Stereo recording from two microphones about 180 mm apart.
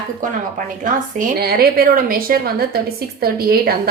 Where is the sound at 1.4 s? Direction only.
55° right (ahead or behind).